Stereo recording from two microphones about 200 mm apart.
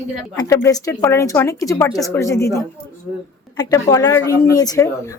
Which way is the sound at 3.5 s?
20° left (ahead or behind).